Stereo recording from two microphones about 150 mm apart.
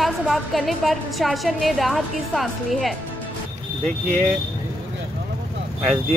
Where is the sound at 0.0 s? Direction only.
Centre (ahead or behind).